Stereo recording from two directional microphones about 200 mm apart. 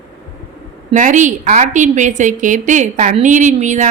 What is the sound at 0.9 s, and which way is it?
A woman's voice, 40° right (ahead or behind).